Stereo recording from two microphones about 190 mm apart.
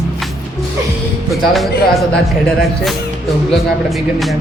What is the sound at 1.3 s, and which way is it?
Speech, centre (ahead or behind).